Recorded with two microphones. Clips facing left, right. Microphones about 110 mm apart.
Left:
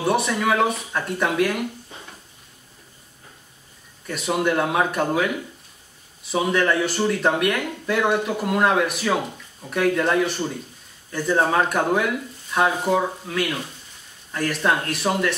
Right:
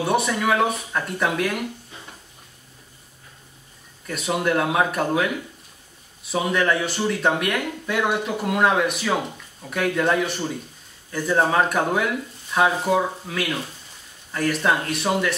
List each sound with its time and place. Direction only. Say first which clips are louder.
0.0 s speech: even; centre (ahead or behind)
4.1 s speech: even; centre (ahead or behind)